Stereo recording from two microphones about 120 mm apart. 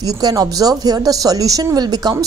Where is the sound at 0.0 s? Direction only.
30° right (ahead or behind).